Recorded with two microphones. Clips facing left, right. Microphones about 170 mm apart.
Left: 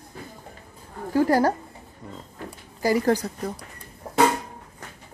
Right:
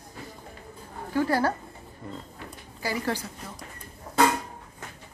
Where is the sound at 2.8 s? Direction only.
40° left (ahead or behind).